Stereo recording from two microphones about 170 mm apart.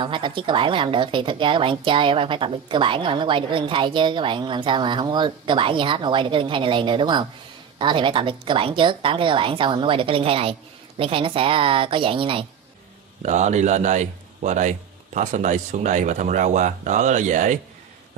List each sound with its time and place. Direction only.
0.0 s a woman's voice: 30° right (ahead or behind)
13.2 s speech: 45° right (ahead or behind)